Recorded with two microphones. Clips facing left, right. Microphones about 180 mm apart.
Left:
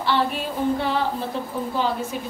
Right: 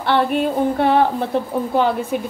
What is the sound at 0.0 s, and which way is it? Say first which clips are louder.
Female singing: right 6 dB; 60° right (ahead or behind).